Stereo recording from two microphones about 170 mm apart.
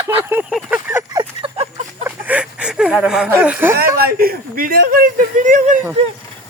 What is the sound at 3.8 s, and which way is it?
Speech, 60° right (ahead or behind).